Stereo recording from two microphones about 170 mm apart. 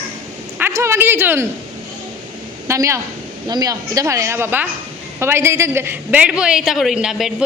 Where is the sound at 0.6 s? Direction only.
15° right (ahead or behind).